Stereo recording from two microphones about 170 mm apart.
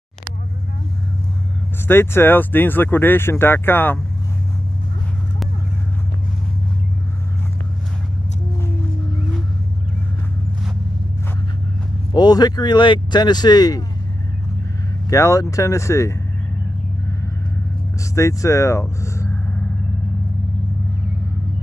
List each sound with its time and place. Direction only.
1.9 s speech: 15° left (ahead or behind)
12.1 s speech: 25° left (ahead or behind)
15.0 s speech: 20° left (ahead or behind)
18.1 s speech: 15° left (ahead or behind)